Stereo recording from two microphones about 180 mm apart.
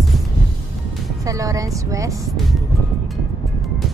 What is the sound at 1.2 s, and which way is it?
Speech, 20° right (ahead or behind).